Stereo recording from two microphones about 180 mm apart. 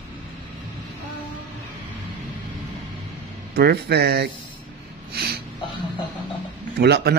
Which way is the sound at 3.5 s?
65° right (ahead or behind).